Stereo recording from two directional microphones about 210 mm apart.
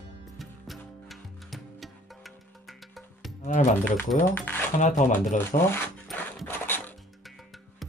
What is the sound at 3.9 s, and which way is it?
Speech, 10° left (ahead or behind).